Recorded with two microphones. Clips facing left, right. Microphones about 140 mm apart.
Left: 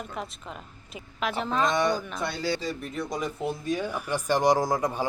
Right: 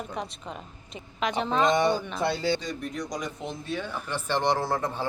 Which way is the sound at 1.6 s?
25° right (ahead or behind).